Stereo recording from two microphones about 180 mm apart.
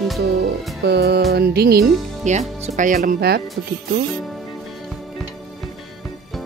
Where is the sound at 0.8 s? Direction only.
65° right (ahead or behind).